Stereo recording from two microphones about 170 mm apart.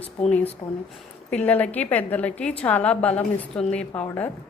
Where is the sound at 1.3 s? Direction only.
10° left (ahead or behind).